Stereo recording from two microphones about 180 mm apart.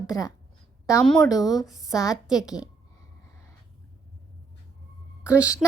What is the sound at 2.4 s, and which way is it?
Speech, 5° right (ahead or behind).